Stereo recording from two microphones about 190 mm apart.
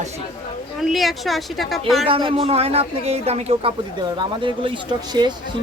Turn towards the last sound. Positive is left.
turn(degrees=-25)  # may be behind; listen again after turning